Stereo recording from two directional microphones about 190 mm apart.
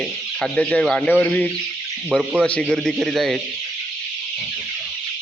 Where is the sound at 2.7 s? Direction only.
Centre (ahead or behind).